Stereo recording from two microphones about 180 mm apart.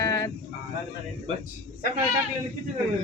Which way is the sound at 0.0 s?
15° left (ahead or behind).